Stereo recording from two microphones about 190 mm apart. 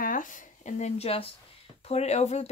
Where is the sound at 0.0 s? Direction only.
45° left (ahead or behind).